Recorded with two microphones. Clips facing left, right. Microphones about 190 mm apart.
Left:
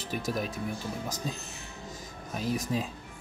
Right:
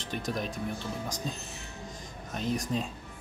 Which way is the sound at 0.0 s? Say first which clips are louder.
Left 1 dB; 5° left (ahead or behind).